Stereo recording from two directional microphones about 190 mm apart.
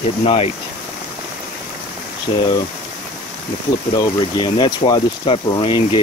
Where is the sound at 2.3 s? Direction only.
25° left (ahead or behind).